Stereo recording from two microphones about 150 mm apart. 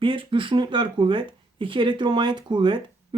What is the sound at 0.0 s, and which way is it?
Speech, 35° right (ahead or behind).